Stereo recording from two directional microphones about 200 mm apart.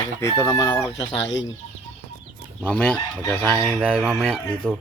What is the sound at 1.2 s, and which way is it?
Speech, 65° left (ahead or behind).